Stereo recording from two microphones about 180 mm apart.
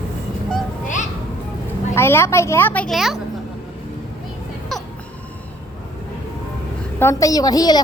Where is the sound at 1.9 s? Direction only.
15° left (ahead or behind).